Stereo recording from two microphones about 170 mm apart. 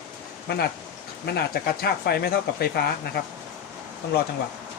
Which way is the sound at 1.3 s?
70° left (ahead or behind).